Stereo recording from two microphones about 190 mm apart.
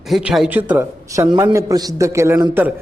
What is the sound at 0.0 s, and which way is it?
A man's voice, 5° right (ahead or behind).